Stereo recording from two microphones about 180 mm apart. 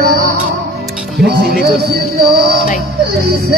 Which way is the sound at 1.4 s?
55° right (ahead or behind).